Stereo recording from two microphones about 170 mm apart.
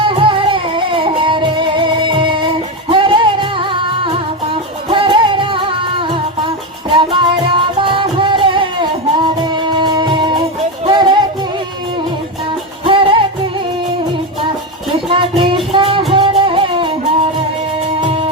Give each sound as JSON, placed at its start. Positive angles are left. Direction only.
{"t": 0.0, "sound": "music", "side_deg": -30}
{"t": 12.8, "sound": "music", "side_deg": -30}
{"t": 15.1, "sound": "music", "side_deg": -30}